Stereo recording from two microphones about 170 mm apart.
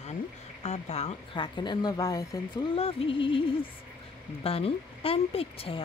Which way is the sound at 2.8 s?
35° left (ahead or behind).